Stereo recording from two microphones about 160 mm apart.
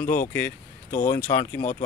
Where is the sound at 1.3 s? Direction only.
15° left (ahead or behind).